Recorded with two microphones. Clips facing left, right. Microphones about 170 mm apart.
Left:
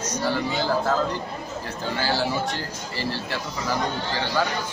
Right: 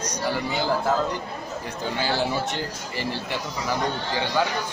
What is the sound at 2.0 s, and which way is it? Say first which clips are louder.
Speech: even; 20° right (ahead or behind).